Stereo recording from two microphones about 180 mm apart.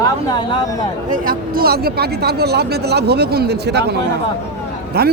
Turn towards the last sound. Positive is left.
turn(degrees=-60)  # may be behind; listen again after turning